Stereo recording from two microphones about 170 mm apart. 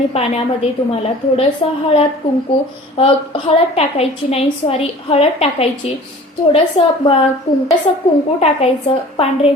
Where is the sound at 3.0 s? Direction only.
35° left (ahead or behind).